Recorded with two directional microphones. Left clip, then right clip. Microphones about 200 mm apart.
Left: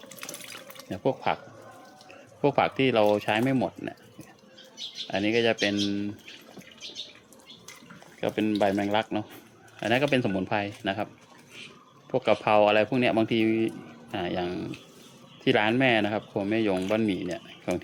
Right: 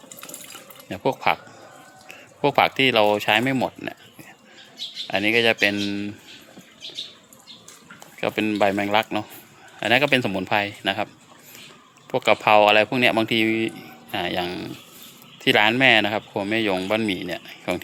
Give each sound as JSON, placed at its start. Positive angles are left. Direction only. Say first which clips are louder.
{"t": 0.9, "sound": "speech", "louder": "right 5 dB", "side_deg": -15}
{"t": 5.0, "sound": "speech", "louder": "right 6 dB", "side_deg": -15}
{"t": 8.2, "sound": "speech", "louder": "right 4 dB", "side_deg": -15}
{"t": 12.1, "sound": "speech", "louder": "right 6 dB", "side_deg": -10}